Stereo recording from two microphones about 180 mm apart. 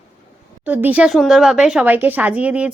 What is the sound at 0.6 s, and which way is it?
Speech, 10° right (ahead or behind).